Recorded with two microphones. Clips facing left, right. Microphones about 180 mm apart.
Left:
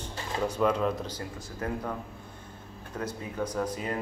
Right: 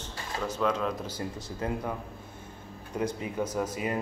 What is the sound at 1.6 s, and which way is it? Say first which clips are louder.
Speech: right 1 dB; 20° right (ahead or behind).